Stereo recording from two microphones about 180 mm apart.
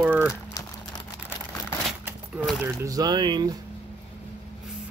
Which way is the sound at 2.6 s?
15° right (ahead or behind).